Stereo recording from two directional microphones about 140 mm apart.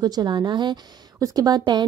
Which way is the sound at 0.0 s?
30° right (ahead or behind).